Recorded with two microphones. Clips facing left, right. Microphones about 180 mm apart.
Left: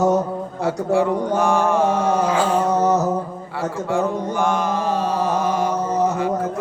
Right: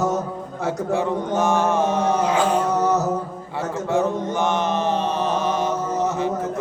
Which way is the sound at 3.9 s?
20° right (ahead or behind).